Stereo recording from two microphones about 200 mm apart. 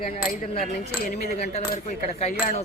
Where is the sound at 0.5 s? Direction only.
40° left (ahead or behind).